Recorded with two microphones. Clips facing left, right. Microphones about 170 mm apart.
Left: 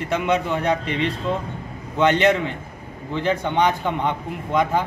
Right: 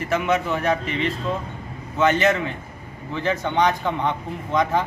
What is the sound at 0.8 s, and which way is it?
Speech, 70° left (ahead or behind).